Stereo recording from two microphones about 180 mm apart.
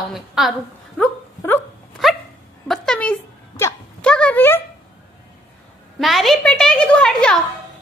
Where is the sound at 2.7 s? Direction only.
5° left (ahead or behind).